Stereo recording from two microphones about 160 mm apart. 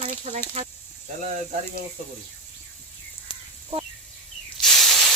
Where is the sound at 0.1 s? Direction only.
50° right (ahead or behind).